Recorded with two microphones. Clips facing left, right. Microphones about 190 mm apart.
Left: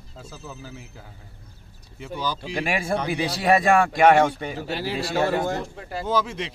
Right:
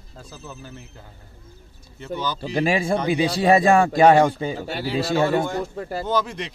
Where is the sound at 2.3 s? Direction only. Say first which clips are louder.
Right 5 dB; 30° right (ahead or behind).